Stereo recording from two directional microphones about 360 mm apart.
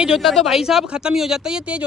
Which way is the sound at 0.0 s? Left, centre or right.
Centre.